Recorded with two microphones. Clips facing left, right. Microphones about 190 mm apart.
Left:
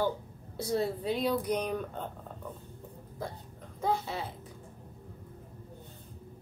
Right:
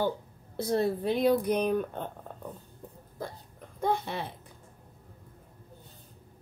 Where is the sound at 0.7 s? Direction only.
60° right (ahead or behind).